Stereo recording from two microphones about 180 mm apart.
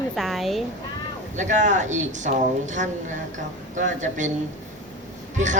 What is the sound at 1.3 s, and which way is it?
Speech, 45° right (ahead or behind).